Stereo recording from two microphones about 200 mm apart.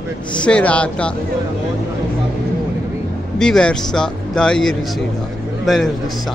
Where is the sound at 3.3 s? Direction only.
5° left (ahead or behind).